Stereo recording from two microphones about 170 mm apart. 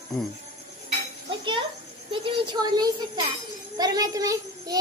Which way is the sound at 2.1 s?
30° right (ahead or behind).